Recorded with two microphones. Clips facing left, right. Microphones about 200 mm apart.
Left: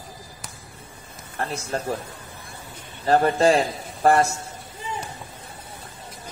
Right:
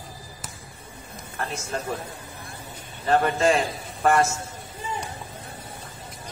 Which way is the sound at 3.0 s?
35° left (ahead or behind).